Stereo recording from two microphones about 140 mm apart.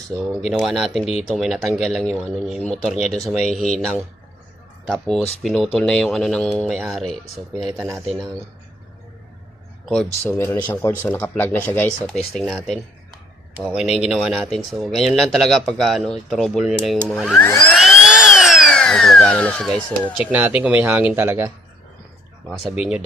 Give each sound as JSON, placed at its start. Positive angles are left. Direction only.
{"t": 0.3, "sound": "speech", "side_deg": 0}
{"t": 4.9, "sound": "speech", "side_deg": 5}
{"t": 10.2, "sound": "speech", "side_deg": 15}
{"t": 17.3, "sound": "speech", "side_deg": 15}
{"t": 17.7, "sound": "a sound", "side_deg": 0}
{"t": 20.3, "sound": "speech", "side_deg": -10}
{"t": 22.4, "sound": "speech", "side_deg": -5}